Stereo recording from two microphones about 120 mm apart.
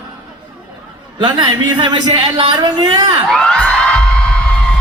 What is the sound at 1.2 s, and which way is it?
A man's voice, 40° right (ahead or behind).